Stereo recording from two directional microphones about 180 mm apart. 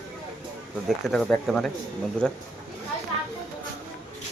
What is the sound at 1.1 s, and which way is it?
Speech, 5° left (ahead or behind).